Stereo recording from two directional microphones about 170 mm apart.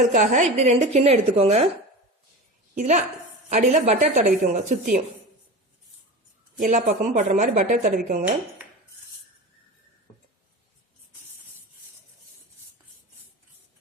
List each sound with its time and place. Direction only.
0.1 s a woman's voice: 45° right (ahead or behind)
2.7 s speech: 45° right (ahead or behind)
6.6 s speech: 50° right (ahead or behind)